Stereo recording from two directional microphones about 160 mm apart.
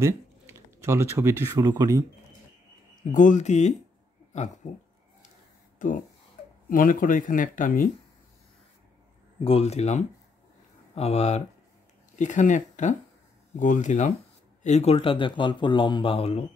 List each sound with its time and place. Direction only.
0.0 s a sound: 15° right (ahead or behind)
1.6 s speech: 25° right (ahead or behind)
3.1 s speech: 50° left (ahead or behind)
4.6 s speech: 60° left (ahead or behind)
6.4 s a sound: 55° left (ahead or behind)
6.7 s speech: 60° left (ahead or behind)
9.4 s a man's voice: 40° left (ahead or behind)